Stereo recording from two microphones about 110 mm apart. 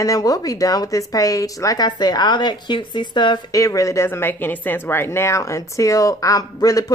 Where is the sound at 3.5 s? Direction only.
30° left (ahead or behind).